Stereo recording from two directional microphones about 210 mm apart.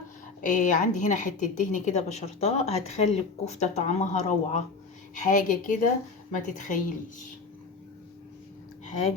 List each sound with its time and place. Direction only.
0.4 s a woman's voice: 35° left (ahead or behind)